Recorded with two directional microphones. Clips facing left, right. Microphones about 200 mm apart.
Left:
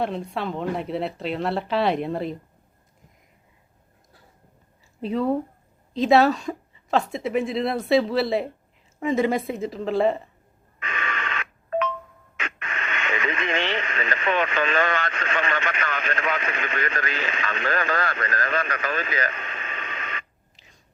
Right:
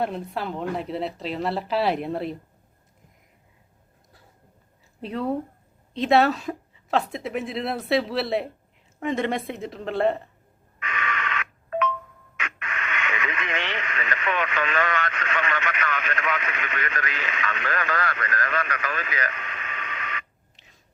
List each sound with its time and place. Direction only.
0.0 s a woman's voice: centre (ahead or behind)
4.9 s a woman's voice: centre (ahead or behind)
10.8 s radio: 25° left (ahead or behind)
12.4 s speech: 25° left (ahead or behind)
20.6 s biting: centre (ahead or behind)